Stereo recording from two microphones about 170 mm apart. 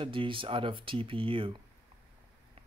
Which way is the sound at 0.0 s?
30° right (ahead or behind).